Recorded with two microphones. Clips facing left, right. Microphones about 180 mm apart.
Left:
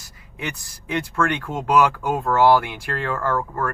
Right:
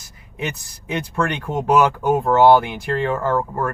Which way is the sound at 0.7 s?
20° right (ahead or behind).